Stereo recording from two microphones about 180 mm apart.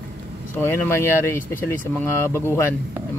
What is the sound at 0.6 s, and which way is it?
Speech, 15° left (ahead or behind).